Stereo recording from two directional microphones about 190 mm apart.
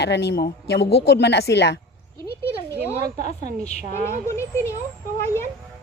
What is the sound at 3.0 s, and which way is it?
Speech, 55° right (ahead or behind).